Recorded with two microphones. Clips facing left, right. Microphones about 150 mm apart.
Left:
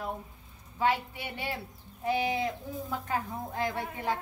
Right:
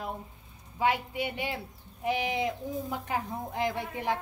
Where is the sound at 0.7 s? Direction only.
15° right (ahead or behind).